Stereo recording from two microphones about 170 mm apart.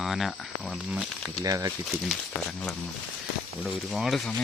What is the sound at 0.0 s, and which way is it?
Speech, centre (ahead or behind).